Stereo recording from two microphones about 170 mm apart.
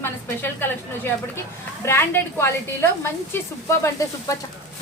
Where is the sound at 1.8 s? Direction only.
15° left (ahead or behind).